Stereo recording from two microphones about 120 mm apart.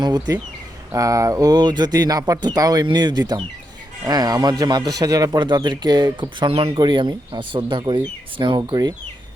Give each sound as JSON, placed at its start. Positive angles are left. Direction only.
{"t": 0.0, "sound": "speech", "side_deg": -35}